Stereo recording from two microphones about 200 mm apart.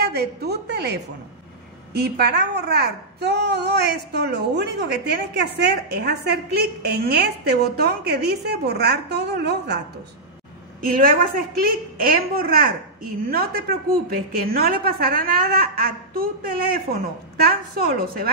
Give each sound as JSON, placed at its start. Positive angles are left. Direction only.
{"t": 0.0, "sound": "a woman's voice", "side_deg": -50}
{"t": 10.9, "sound": "a child's voice", "side_deg": -45}